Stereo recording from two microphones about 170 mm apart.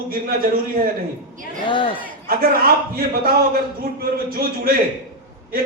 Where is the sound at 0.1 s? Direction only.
60° right (ahead or behind).